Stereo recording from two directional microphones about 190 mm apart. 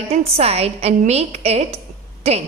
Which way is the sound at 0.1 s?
30° right (ahead or behind).